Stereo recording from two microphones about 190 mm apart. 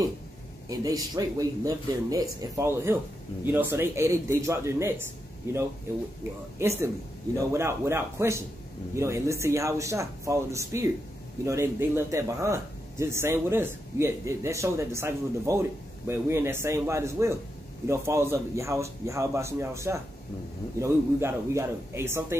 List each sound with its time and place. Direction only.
0.7 s speech: 20° right (ahead or behind)